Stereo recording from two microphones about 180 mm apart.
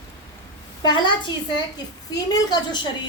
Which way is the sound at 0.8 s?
25° left (ahead or behind).